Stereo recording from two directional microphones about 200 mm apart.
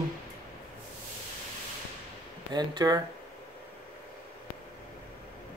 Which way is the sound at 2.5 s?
20° right (ahead or behind).